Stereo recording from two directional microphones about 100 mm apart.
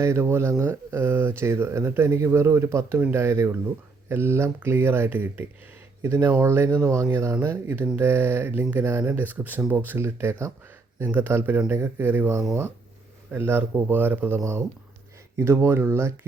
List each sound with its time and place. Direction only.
0.0 s speech: 25° right (ahead or behind)
13.4 s speech: 20° right (ahead or behind)